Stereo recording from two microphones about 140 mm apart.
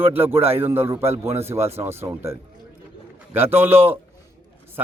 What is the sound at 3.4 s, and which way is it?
Speech, 15° right (ahead or behind).